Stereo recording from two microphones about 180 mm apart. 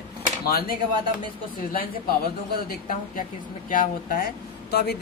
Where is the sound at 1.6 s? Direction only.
50° left (ahead or behind).